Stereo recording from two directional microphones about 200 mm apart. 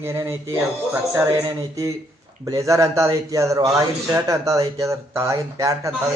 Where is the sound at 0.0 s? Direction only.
15° right (ahead or behind).